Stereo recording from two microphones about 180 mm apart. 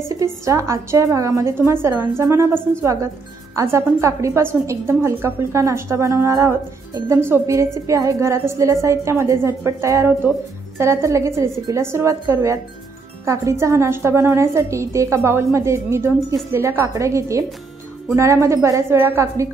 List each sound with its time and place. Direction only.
0.1 s a woman's voice: 15° right (ahead or behind)